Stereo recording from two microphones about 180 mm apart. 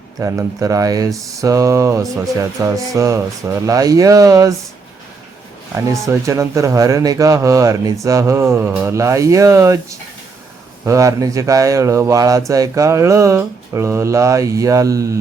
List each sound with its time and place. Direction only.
0.2 s speech: 15° right (ahead or behind)
6.1 s speech: 15° right (ahead or behind)